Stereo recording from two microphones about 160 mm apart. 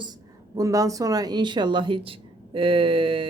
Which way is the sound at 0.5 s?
20° right (ahead or behind).